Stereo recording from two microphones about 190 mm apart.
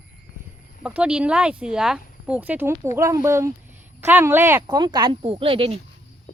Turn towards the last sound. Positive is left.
turn(degrees=-30)  # may be behind; listen again after turning